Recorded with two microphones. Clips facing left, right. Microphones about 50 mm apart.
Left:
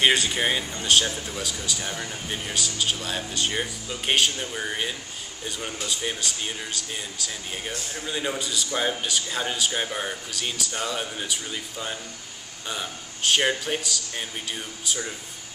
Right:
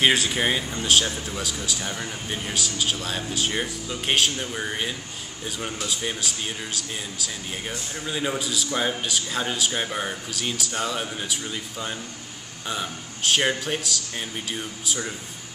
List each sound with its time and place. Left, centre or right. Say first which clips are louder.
0.0 s speech: right 1 dB; centre